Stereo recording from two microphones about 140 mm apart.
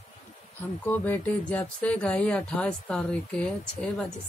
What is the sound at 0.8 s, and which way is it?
Speech, 15° left (ahead or behind).